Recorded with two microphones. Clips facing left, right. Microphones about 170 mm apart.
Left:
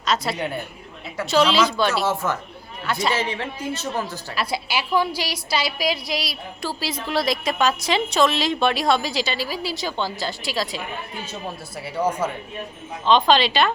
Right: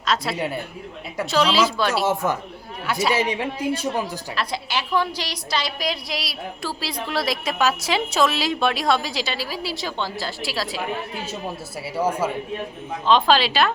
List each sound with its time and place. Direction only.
0.0 s a woman's voice: centre (ahead or behind)
2.0 s a man's voice: 15° right (ahead or behind)
4.4 s a woman's voice: 10° left (ahead or behind)
11.9 s a man's voice: 10° right (ahead or behind)